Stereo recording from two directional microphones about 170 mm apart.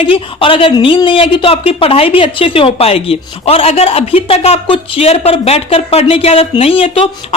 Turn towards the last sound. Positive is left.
turn(degrees=35)  # may be behind; listen again after turning